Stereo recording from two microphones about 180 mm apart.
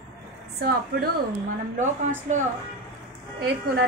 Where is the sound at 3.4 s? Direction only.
60° right (ahead or behind).